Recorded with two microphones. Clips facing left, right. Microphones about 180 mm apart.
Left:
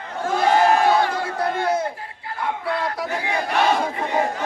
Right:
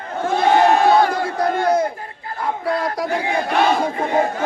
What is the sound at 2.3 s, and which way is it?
Speech, 40° right (ahead or behind).